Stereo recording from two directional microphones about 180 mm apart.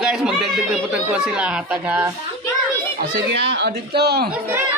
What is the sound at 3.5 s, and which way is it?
Speech, 65° right (ahead or behind).